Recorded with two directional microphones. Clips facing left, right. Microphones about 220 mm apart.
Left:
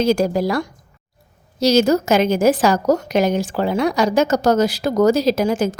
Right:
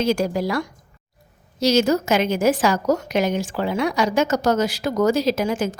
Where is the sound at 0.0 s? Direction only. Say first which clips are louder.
Left 4 dB; 40° left (ahead or behind).